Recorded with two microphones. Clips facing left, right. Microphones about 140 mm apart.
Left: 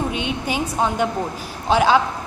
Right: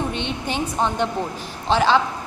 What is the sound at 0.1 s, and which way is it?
A woman's voice, 10° left (ahead or behind).